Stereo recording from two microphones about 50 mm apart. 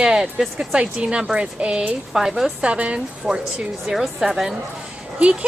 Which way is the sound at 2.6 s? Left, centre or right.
Right.